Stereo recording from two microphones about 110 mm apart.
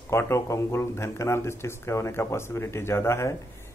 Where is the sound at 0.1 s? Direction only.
25° left (ahead or behind).